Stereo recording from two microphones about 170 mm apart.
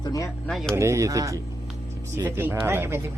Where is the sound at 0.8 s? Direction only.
15° right (ahead or behind).